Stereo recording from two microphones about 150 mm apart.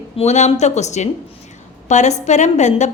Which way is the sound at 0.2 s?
50° left (ahead or behind).